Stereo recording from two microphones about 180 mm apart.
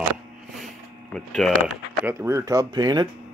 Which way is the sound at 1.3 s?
Centre (ahead or behind).